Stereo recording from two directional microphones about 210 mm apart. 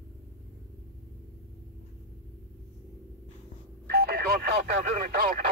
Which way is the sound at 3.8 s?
50° right (ahead or behind).